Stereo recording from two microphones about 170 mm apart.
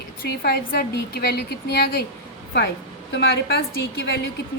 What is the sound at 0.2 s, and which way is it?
A woman's voice, 65° left (ahead or behind).